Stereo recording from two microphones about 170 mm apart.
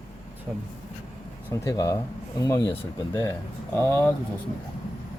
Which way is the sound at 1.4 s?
20° left (ahead or behind).